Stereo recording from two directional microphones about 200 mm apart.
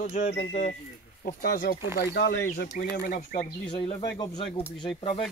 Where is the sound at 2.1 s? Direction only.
55° left (ahead or behind).